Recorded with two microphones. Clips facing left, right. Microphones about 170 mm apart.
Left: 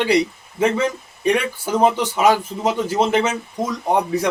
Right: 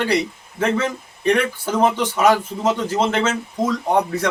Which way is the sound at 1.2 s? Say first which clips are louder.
Right 1 dB; 10° left (ahead or behind).